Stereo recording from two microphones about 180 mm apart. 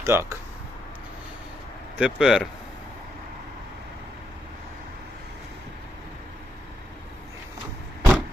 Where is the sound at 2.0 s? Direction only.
5° right (ahead or behind).